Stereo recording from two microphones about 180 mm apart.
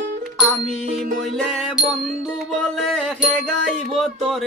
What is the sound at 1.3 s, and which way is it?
Music, centre (ahead or behind).